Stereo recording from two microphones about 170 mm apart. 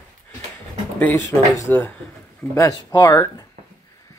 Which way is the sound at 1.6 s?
15° left (ahead or behind).